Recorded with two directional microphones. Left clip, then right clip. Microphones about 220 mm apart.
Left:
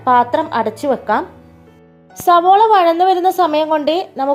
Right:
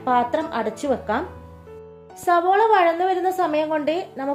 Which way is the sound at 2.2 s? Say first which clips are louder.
Left 8 dB; 30° left (ahead or behind).